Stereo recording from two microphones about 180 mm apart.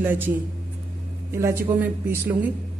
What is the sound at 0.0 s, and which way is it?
Speech, 10° right (ahead or behind).